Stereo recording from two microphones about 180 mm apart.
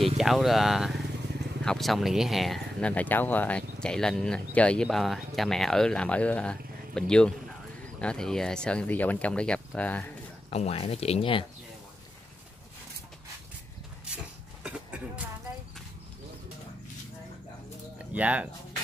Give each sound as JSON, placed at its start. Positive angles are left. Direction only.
{"t": 0.2, "sound": "speech", "side_deg": 0}
{"t": 10.5, "sound": "speech", "side_deg": 35}
{"t": 14.0, "sound": "a sound", "side_deg": -5}
{"t": 17.9, "sound": "speech", "side_deg": -10}